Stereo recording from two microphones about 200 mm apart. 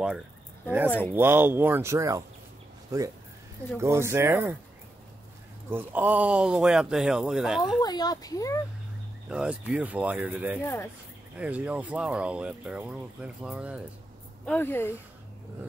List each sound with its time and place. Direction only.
1.1 s speech: 10° right (ahead or behind)
5.7 s speech: 10° right (ahead or behind)
7.8 s speech: 20° left (ahead or behind)
9.3 s speech: 5° right (ahead or behind)
10.6 s speech: 10° left (ahead or behind)
11.3 s speech: 5° right (ahead or behind)
14.4 s speech: 10° left (ahead or behind)